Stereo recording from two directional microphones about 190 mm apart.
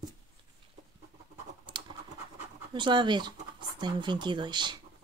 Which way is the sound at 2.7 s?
25° right (ahead or behind).